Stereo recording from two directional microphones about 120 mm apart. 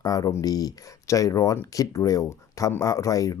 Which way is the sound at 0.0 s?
30° left (ahead or behind).